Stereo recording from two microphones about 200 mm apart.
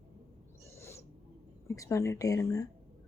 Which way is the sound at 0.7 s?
15° left (ahead or behind).